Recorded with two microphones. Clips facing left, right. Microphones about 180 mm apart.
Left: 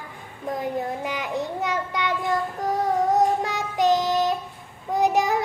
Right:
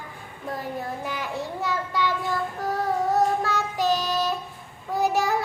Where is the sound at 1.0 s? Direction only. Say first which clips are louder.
Left 3 dB; 15° left (ahead or behind).